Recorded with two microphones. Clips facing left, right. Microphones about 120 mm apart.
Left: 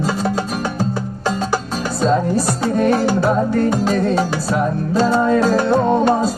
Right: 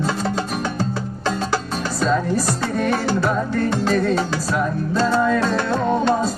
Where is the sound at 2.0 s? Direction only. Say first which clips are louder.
Left 4 dB; 35° left (ahead or behind).